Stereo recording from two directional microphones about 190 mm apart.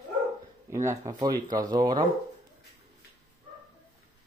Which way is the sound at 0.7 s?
15° right (ahead or behind).